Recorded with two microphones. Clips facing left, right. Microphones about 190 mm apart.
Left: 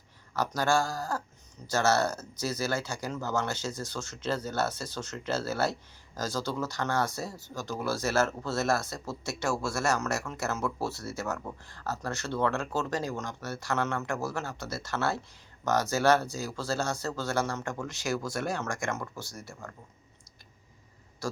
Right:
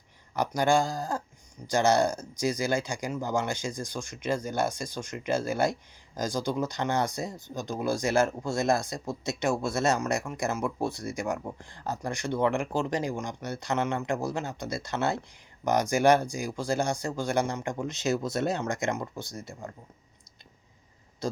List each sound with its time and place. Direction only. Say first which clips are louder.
0.3 s speech: right 3 dB; 15° right (ahead or behind)